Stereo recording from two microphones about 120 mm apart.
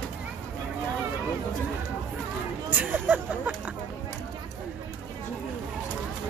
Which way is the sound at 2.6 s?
15° right (ahead or behind).